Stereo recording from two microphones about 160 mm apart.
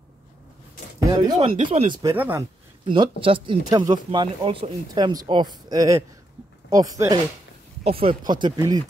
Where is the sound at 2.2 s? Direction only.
10° right (ahead or behind).